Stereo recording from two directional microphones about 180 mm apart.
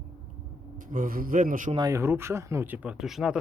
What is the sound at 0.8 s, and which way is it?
Speech, 50° right (ahead or behind).